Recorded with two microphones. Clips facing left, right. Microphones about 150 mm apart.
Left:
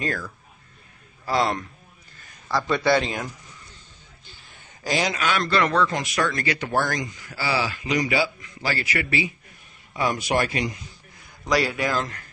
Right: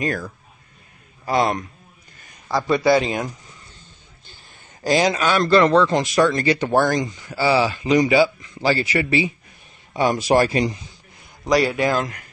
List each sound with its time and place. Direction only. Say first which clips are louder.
1.2 s speech: right 3 dB; 15° right (ahead or behind)
2.7 s speech: right 5 dB; 10° right (ahead or behind)
4.8 s a man's voice: right 6 dB; 35° right (ahead or behind)
11.4 s a man's voice: right 5 dB; 20° right (ahead or behind)
12.0 s speech: right 4 dB; 10° right (ahead or behind)